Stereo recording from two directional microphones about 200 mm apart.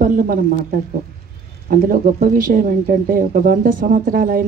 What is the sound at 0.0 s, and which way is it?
Speech, 45° right (ahead or behind).